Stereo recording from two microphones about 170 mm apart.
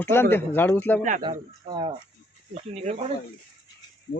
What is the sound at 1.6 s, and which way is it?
Speech, 30° right (ahead or behind).